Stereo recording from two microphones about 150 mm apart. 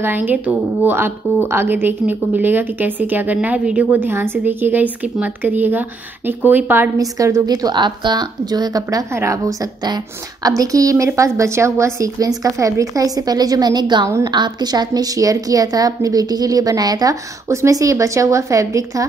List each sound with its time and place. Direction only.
0.0 s a woman's voice: 15° right (ahead or behind)